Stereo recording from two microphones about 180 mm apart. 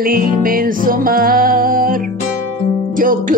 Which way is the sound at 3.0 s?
50° right (ahead or behind).